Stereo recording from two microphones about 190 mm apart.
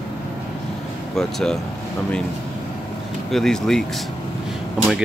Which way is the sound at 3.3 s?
Centre (ahead or behind).